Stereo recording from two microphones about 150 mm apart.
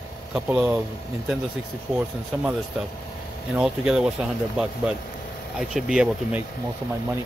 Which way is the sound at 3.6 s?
5° right (ahead or behind).